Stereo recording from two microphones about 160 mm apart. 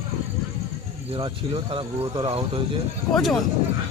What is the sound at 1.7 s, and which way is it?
Speech, 30° right (ahead or behind).